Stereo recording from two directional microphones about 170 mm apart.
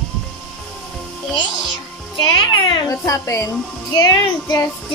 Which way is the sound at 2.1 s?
25° left (ahead or behind).